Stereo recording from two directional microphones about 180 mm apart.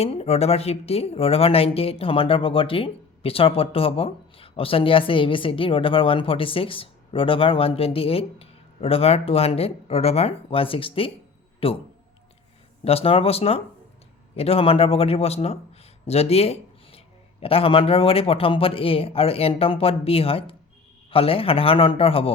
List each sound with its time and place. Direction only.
0.0 s speech: 35° left (ahead or behind)
12.8 s speech: 30° left (ahead or behind)